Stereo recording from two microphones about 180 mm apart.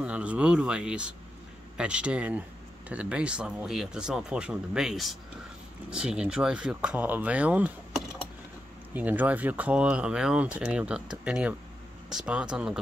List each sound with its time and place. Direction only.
0.0 s speech: 5° right (ahead or behind)